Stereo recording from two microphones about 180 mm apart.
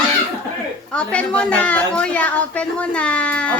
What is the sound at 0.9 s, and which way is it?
A woman's voice, 5° left (ahead or behind).